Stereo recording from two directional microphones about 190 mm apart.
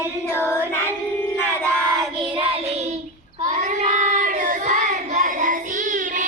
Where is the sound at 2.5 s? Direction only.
35° right (ahead or behind).